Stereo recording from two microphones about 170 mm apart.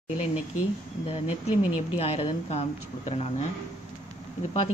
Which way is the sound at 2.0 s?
40° left (ahead or behind).